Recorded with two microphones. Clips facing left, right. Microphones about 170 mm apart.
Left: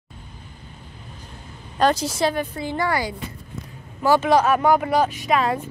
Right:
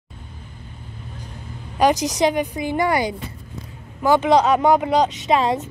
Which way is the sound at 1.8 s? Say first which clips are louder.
Right 2 dB; 15° right (ahead or behind).